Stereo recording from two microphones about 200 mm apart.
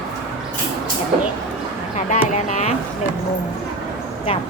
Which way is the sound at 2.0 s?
35° left (ahead or behind).